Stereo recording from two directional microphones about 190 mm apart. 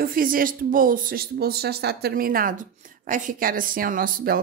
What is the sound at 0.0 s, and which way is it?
Speech, 50° right (ahead or behind).